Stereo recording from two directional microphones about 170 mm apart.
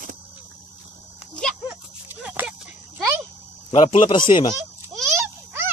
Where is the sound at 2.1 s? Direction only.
10° right (ahead or behind).